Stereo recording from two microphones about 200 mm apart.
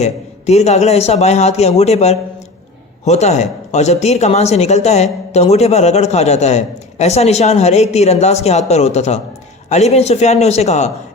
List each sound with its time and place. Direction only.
0.0 s a man's voice: 35° left (ahead or behind)